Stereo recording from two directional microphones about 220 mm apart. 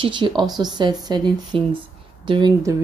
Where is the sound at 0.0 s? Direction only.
20° right (ahead or behind).